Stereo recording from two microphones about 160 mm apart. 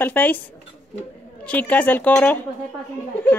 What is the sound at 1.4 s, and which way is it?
A woman's voice, 10° left (ahead or behind).